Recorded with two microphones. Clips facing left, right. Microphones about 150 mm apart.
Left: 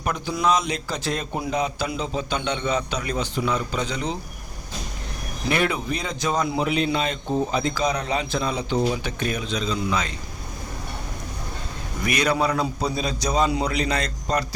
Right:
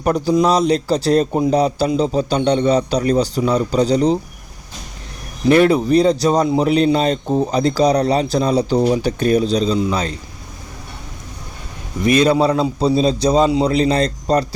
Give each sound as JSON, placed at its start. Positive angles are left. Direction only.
{"t": 0.0, "sound": "a man's voice", "side_deg": -35}
{"t": 5.5, "sound": "a man's voice", "side_deg": -35}
{"t": 12.0, "sound": "a man's voice", "side_deg": -25}